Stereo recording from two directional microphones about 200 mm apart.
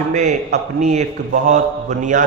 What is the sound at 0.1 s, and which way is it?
A man's voice, 35° right (ahead or behind).